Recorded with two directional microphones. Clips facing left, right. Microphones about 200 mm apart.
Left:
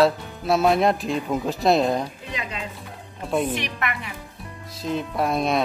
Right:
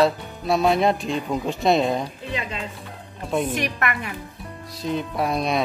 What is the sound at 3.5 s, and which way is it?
Speech, 45° right (ahead or behind).